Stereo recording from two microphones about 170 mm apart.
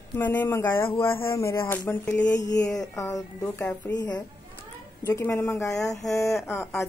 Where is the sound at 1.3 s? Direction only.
15° left (ahead or behind).